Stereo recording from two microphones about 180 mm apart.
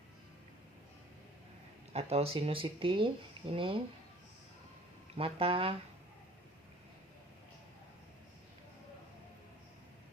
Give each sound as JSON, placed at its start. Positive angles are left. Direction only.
{"t": 1.9, "sound": "speech", "side_deg": -35}
{"t": 5.1, "sound": "speech", "side_deg": -30}